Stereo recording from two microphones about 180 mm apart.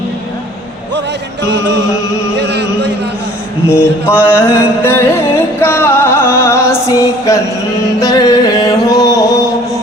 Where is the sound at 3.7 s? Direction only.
15° left (ahead or behind).